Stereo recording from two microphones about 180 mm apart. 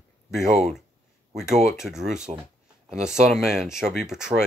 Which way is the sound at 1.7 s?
Centre (ahead or behind).